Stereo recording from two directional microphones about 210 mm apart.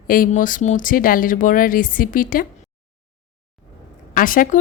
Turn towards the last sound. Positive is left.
turn(degrees=40)  # may be behind; listen again after turning